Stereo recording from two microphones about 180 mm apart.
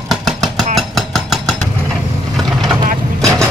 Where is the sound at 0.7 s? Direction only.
Centre (ahead or behind).